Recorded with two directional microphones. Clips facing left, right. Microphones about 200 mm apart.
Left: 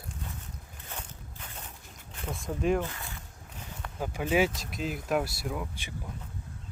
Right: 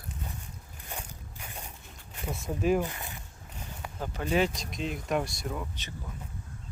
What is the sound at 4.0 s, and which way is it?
Speech, 10° left (ahead or behind).